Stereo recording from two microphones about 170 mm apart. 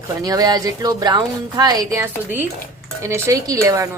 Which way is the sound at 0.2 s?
20° right (ahead or behind).